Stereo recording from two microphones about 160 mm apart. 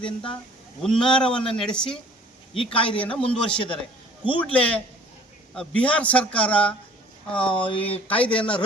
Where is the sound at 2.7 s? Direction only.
30° left (ahead or behind).